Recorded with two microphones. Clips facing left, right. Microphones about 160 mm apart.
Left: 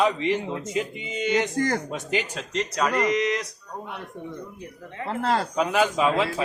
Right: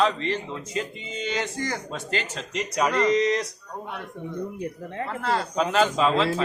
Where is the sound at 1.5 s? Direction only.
50° left (ahead or behind).